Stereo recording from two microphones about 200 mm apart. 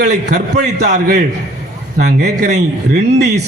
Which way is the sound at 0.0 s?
40° right (ahead or behind).